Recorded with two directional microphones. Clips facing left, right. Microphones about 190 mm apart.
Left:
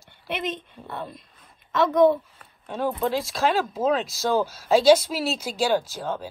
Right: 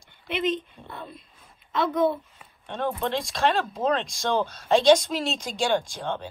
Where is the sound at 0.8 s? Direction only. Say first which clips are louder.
Left 3 dB; 10° left (ahead or behind).